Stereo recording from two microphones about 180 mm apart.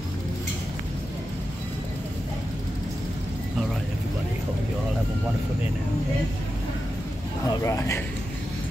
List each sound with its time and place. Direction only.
7.4 s a man's voice: 15° left (ahead or behind)